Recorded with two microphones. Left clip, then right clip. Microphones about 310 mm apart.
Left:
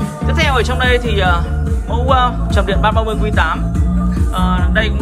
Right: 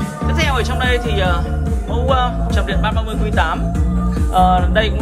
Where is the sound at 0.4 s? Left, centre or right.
Centre.